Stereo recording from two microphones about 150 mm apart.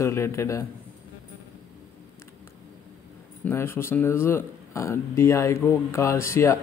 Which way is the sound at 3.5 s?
15° left (ahead or behind).